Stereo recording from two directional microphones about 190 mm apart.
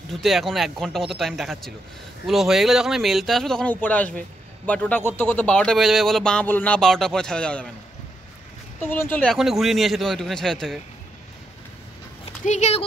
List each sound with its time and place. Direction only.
0.1 s speech: centre (ahead or behind)
8.8 s speech: 10° left (ahead or behind)
12.4 s speech: 35° left (ahead or behind)